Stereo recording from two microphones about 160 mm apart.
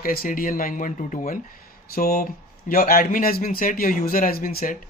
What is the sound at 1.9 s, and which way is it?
Speech, 65° left (ahead or behind).